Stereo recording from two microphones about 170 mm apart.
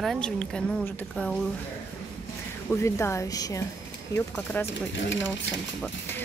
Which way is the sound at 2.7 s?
15° left (ahead or behind).